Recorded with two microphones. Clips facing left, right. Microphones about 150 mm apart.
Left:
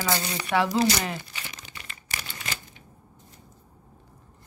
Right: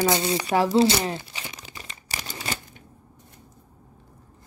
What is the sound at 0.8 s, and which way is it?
Speech, 25° right (ahead or behind).